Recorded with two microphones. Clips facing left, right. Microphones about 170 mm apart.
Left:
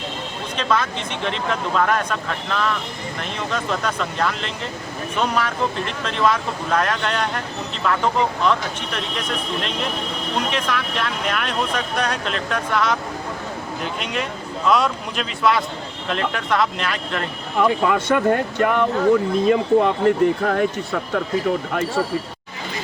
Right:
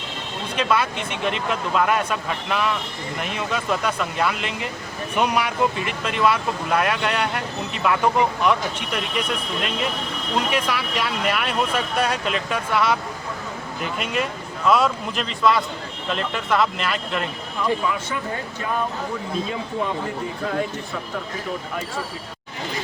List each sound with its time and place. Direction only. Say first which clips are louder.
0.5 s speech: even; 10° right (ahead or behind)
10.5 s speech: even; 10° right (ahead or behind)
17.6 s speech: left 5 dB; 85° left